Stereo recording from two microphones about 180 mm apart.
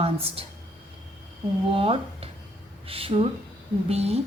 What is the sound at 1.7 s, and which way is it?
A woman's voice, 30° right (ahead or behind).